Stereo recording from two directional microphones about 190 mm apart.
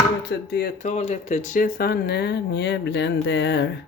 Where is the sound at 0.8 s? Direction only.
35° left (ahead or behind).